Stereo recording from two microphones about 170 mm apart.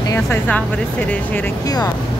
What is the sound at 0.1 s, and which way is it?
Speech, 10° left (ahead or behind).